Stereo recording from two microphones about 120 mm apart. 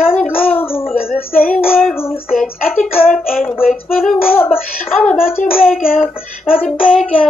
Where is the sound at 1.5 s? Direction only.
Centre (ahead or behind).